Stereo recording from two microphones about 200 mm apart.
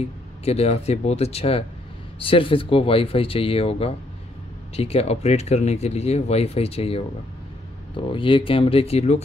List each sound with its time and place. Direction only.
0.0 s speech: 30° left (ahead or behind)